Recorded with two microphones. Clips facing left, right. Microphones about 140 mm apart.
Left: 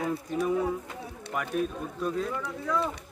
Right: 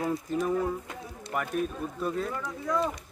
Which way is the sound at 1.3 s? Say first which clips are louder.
Even; centre (ahead or behind).